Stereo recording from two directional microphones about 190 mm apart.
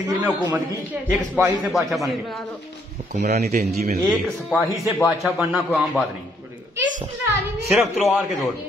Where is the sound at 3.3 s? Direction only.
55° right (ahead or behind).